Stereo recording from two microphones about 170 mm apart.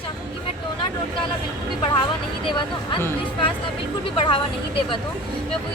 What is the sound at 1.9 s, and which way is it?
Speech, 25° left (ahead or behind).